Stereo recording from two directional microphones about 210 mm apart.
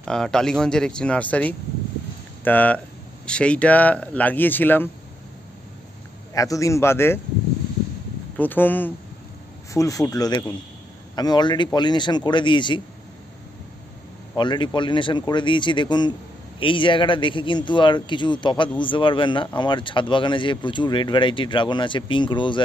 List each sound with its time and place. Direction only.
0.0 s speech: 5° left (ahead or behind)
6.3 s speech: 15° left (ahead or behind)
8.4 s a man's voice: 10° left (ahead or behind)
14.3 s a man's voice: 20° left (ahead or behind)